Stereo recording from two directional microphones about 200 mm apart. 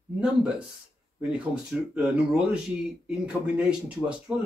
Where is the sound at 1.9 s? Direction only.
5° right (ahead or behind).